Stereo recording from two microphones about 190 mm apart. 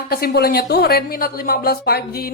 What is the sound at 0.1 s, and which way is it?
Speech, 55° left (ahead or behind).